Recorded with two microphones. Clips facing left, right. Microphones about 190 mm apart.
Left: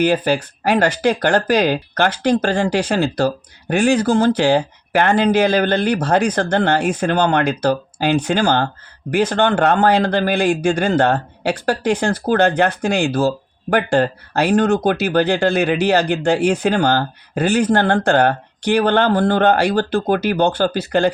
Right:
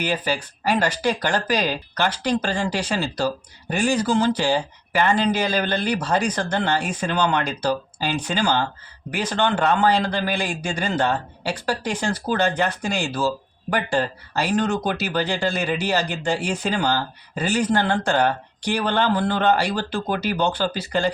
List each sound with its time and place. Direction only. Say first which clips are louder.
0.0 s speech: left 8 dB; 50° left (ahead or behind)